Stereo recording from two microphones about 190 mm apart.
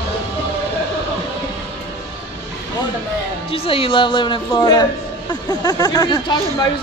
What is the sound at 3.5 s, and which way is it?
A woman's voice, 30° left (ahead or behind).